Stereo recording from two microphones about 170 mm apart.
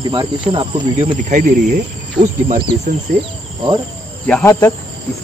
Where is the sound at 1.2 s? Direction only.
45° right (ahead or behind).